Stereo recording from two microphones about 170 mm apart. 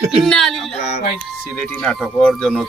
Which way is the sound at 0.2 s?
5° left (ahead or behind).